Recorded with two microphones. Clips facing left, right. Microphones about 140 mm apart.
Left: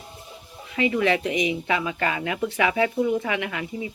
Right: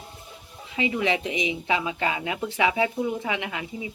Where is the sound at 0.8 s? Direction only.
20° right (ahead or behind).